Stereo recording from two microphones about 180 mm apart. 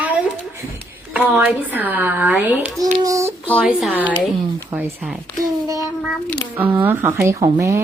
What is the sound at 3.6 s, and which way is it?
Speech, 5° right (ahead or behind).